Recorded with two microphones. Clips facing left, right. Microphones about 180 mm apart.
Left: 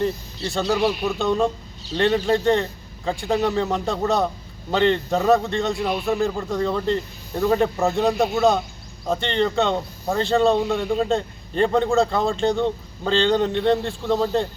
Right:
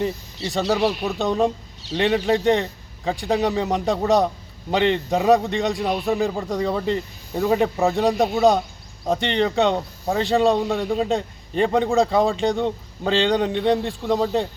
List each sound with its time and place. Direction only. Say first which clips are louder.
0.0 s a man's voice: left 1 dB; 20° right (ahead or behind)
5.9 s speech: right 1 dB; 35° right (ahead or behind)
6.2 s a man's voice: even; 15° right (ahead or behind)